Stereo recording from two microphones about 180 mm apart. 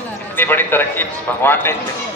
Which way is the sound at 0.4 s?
10° left (ahead or behind).